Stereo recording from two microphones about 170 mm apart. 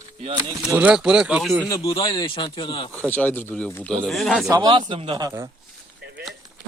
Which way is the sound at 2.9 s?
10° left (ahead or behind).